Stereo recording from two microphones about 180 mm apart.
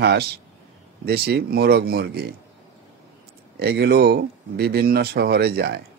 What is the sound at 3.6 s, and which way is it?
Speech, 65° right (ahead or behind).